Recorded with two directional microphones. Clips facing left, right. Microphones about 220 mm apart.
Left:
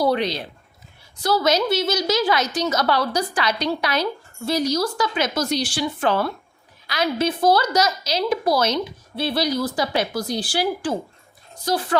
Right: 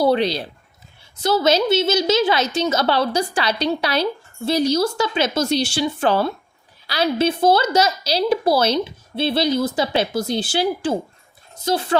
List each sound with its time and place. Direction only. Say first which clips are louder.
0.0 s a woman's voice: right 3 dB; 30° right (ahead or behind)